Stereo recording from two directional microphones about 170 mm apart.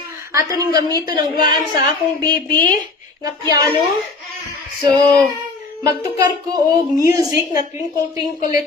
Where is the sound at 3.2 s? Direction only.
20° right (ahead or behind).